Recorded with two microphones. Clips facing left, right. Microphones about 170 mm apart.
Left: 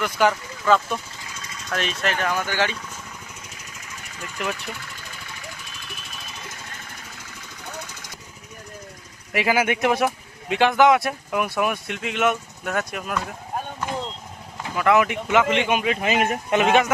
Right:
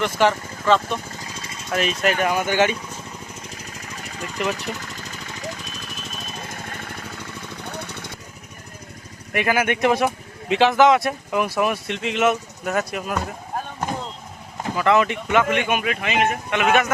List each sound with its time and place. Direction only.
0.0 s speech: centre (ahead or behind)
1.2 s vehicle: 30° right (ahead or behind)
1.7 s speech: 5° right (ahead or behind)
4.2 s speech: 40° right (ahead or behind)
4.5 s vehicle: 40° right (ahead or behind); by 8.1 s 60° right (ahead or behind)
9.3 s speech: 10° left (ahead or behind)
14.8 s speech: 5° left (ahead or behind); by 16.1 s 30° left (ahead or behind)
16.1 s speech: 40° left (ahead or behind)